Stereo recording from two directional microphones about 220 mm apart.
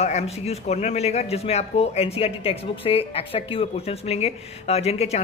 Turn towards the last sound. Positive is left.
turn(degrees=30)  # may be behind; listen again after turning